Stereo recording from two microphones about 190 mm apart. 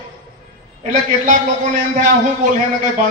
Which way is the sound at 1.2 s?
45° right (ahead or behind).